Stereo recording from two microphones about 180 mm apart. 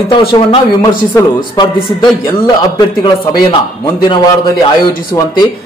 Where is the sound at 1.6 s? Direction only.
25° left (ahead or behind).